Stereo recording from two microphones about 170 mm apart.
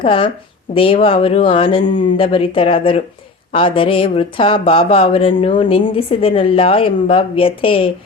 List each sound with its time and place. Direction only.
0.0 s speech: 30° left (ahead or behind)